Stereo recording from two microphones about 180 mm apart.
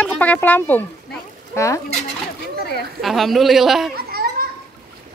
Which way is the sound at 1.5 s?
15° left (ahead or behind).